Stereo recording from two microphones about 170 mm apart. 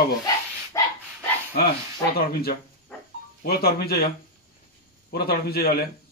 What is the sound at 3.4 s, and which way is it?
Speech, 65° left (ahead or behind).